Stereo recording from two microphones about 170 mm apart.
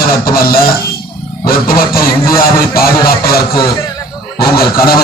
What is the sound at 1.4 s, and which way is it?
Speech, 60° left (ahead or behind).